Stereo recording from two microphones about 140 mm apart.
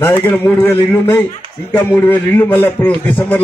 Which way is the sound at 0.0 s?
15° left (ahead or behind).